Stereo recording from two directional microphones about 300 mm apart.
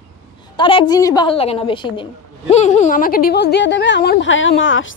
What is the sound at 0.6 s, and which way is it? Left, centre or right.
A woman's voice, centre.